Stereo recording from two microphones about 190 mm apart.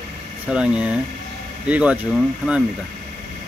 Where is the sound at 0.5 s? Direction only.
5° right (ahead or behind).